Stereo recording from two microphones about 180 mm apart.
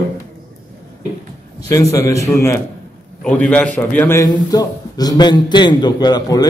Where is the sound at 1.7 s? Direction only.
15° left (ahead or behind).